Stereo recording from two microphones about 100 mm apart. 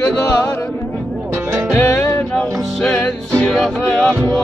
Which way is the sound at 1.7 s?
25° left (ahead or behind).